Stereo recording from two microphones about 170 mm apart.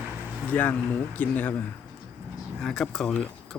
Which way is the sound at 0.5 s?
10° left (ahead or behind).